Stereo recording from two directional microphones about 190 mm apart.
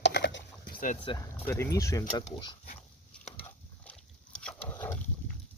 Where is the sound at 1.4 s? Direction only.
15° left (ahead or behind).